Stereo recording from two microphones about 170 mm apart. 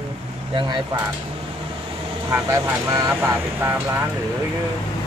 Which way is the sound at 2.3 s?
20° right (ahead or behind).